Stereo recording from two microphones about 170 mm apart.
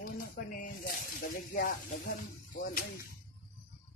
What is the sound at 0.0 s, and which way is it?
Snake, 55° left (ahead or behind).